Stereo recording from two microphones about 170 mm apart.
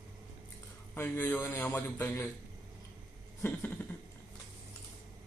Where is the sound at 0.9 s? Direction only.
10° left (ahead or behind).